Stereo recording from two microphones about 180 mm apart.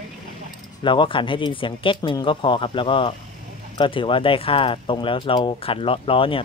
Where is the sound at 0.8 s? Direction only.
30° left (ahead or behind).